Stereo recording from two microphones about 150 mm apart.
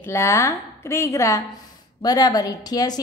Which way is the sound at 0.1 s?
20° left (ahead or behind).